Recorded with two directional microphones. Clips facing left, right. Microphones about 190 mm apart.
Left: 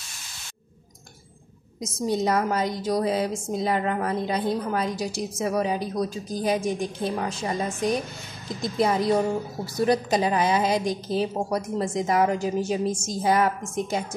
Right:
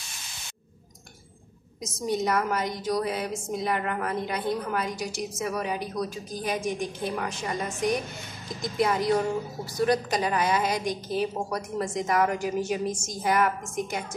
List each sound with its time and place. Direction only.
2.0 s a woman's voice: 30° left (ahead or behind)